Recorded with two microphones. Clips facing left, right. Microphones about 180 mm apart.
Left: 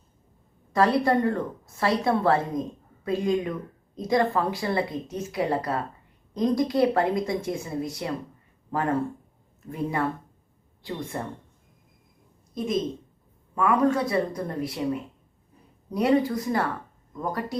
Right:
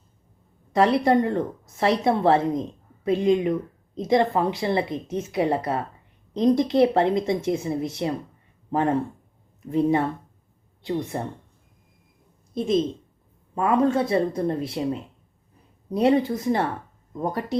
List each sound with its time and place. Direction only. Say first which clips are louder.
0.7 s a woman's voice: right 3 dB; 20° right (ahead or behind)
12.5 s a woman's voice: right 4 dB; 30° right (ahead or behind)